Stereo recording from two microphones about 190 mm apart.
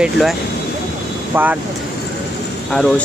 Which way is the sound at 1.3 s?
10° right (ahead or behind).